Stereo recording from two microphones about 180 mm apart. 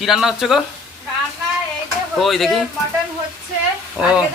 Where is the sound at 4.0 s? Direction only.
5° right (ahead or behind).